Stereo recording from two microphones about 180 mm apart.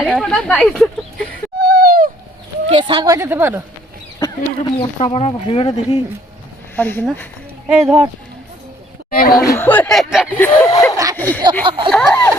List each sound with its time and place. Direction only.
0.1 s speech: centre (ahead or behind)
1.2 s whimper: 60° right (ahead or behind)
2.6 s a woman's voice: 30° right (ahead or behind); by 3.6 s 10° right (ahead or behind)
4.2 s speech: 20° left (ahead or behind)
4.9 s speech: 40° left (ahead or behind)
6.7 s speech: 10° left (ahead or behind)
7.9 s a woman's voice: 15° right (ahead or behind)
9.0 s speech: 55° left (ahead or behind)
9.3 s speech: 15° left (ahead or behind); by 10.2 s centre (ahead or behind)
10.4 s speech: 15° left (ahead or behind)
10.9 s a sound: 20° right (ahead or behind)
11.2 s speech: 10° left (ahead or behind)
11.9 s a sound: 5° left (ahead or behind)